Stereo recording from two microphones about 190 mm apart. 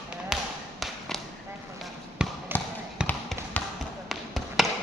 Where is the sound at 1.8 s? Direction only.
5° right (ahead or behind).